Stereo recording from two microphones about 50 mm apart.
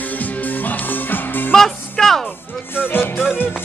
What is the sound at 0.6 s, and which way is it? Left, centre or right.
Music, left.